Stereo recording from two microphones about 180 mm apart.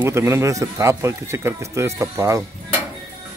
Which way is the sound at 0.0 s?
15° right (ahead or behind).